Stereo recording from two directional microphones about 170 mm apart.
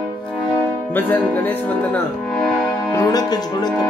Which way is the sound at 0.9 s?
10° left (ahead or behind).